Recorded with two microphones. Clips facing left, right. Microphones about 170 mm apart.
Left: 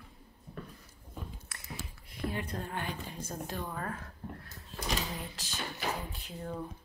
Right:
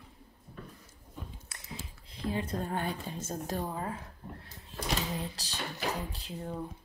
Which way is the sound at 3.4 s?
40° right (ahead or behind).